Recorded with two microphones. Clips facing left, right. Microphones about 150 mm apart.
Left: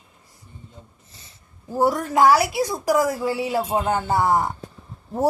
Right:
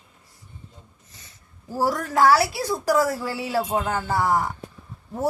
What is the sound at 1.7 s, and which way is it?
A woman's voice, 20° left (ahead or behind).